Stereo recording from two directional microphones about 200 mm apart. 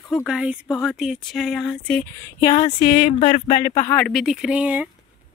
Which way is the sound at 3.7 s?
10° left (ahead or behind).